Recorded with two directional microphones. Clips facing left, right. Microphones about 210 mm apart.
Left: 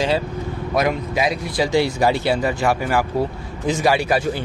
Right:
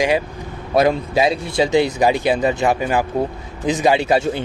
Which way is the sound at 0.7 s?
30° right (ahead or behind).